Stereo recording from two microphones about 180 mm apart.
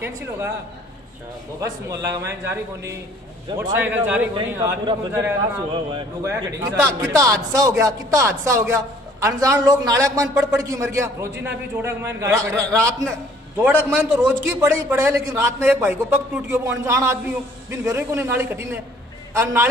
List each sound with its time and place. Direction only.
0.0 s a man's voice: 15° right (ahead or behind)
1.6 s a man's voice: 20° right (ahead or behind)
5.7 s speech: 25° right (ahead or behind)
6.2 s a man's voice: 15° right (ahead or behind)